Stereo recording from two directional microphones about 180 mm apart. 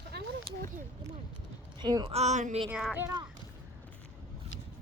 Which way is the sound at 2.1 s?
40° right (ahead or behind).